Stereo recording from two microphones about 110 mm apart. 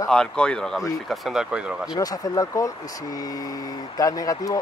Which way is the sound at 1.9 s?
35° left (ahead or behind).